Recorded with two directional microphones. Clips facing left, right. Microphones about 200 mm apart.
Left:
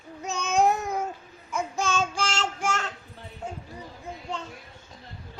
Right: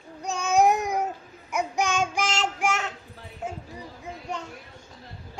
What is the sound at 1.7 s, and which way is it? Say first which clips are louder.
Child singing: right 1 dB; 15° right (ahead or behind).